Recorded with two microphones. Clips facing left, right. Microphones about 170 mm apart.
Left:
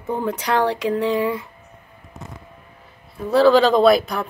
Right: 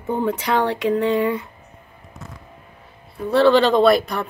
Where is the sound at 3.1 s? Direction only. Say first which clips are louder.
Left 1 dB; centre (ahead or behind).